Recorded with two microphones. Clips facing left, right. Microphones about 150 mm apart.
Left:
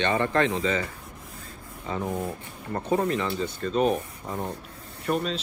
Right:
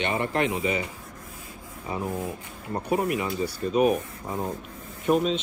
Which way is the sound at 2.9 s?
15° right (ahead or behind).